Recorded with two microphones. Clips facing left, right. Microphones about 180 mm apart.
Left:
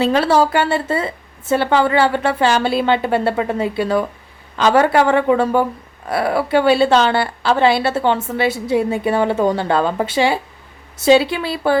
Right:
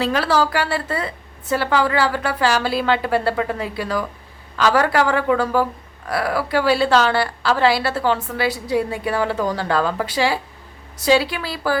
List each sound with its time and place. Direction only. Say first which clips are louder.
0.0 s a woman's voice: left 4 dB; 25° left (ahead or behind)